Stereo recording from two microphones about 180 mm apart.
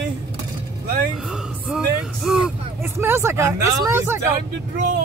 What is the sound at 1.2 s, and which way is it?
Speech, centre (ahead or behind).